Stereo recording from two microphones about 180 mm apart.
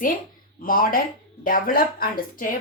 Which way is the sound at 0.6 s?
50° left (ahead or behind).